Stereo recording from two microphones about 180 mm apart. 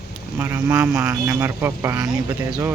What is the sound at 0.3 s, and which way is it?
A man's voice, 10° right (ahead or behind).